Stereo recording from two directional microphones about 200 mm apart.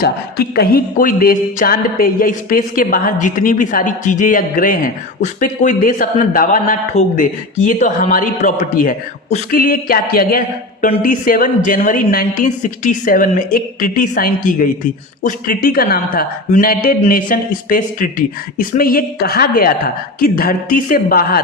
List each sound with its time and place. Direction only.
0.0 s speech: 50° left (ahead or behind)